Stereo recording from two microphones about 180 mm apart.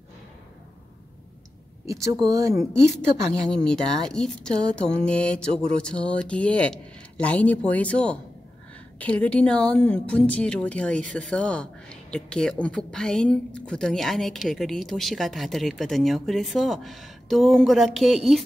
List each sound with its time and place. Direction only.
1.9 s speech: 20° right (ahead or behind)
3.4 s speech: 5° left (ahead or behind)